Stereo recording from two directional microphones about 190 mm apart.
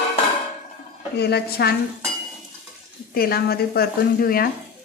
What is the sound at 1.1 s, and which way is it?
Speech, 60° left (ahead or behind).